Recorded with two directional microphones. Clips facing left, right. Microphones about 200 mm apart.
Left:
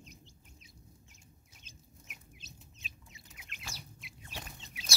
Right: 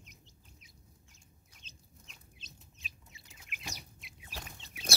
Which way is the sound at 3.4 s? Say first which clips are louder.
Right 3 dB; 10° right (ahead or behind).